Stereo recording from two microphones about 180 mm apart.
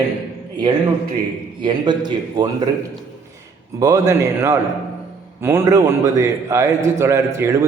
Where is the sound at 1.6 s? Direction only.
25° right (ahead or behind).